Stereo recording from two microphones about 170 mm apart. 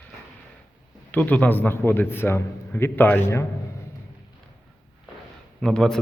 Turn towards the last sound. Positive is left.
turn(degrees=5)  # may be behind; listen again after turning